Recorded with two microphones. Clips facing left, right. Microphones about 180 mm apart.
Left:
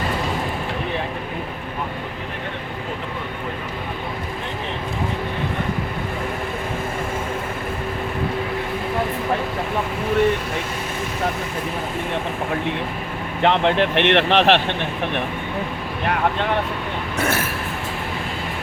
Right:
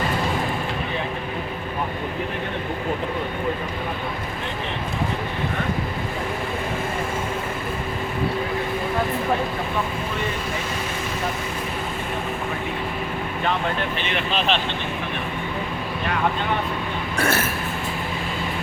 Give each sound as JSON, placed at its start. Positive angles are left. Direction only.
{"t": 13.4, "sound": "speech", "side_deg": 80}
{"t": 17.2, "sound": "speech", "side_deg": 15}